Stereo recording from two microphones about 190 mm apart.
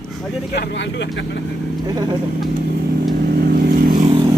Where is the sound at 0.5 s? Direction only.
65° left (ahead or behind).